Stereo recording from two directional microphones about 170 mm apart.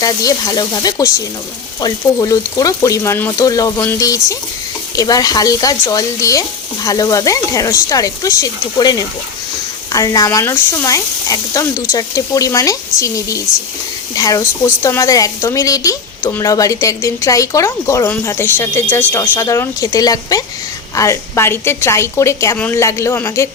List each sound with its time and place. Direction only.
0.0 s a woman's voice: 20° left (ahead or behind)